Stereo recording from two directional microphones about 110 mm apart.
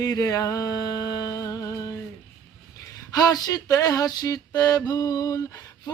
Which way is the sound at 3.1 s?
35° left (ahead or behind).